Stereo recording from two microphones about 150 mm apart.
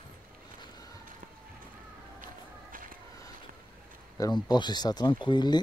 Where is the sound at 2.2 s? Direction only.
65° right (ahead or behind).